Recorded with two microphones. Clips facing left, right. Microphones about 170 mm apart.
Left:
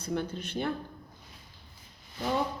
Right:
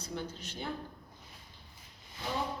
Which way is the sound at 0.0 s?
60° left (ahead or behind).